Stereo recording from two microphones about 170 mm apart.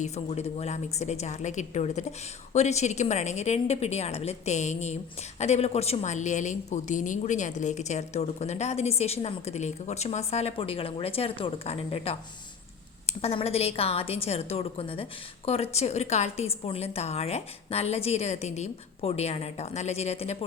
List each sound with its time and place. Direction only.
0.0 s a woman's voice: 40° left (ahead or behind)